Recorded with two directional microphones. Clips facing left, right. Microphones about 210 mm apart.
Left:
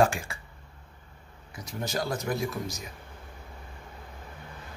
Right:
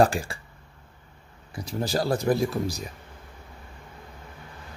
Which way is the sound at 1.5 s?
30° right (ahead or behind).